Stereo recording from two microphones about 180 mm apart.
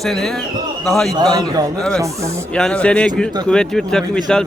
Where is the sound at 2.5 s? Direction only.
5° left (ahead or behind).